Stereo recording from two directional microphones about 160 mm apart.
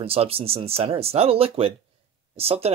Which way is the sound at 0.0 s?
35° right (ahead or behind).